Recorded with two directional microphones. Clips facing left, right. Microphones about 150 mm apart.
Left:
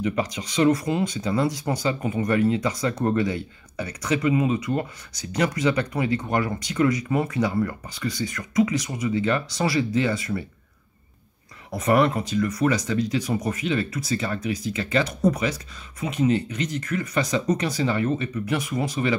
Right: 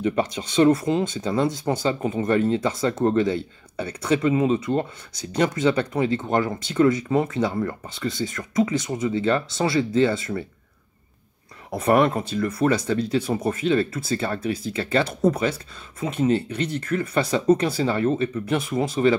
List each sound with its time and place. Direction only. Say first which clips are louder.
0.0 s speech: right 2 dB; 30° right (ahead or behind)
12.1 s speech: even; 30° right (ahead or behind)